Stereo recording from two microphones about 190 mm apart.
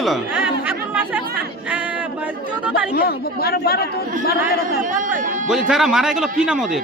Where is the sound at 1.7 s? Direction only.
5° right (ahead or behind).